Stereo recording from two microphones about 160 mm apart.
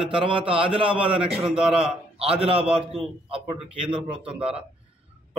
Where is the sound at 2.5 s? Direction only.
35° right (ahead or behind).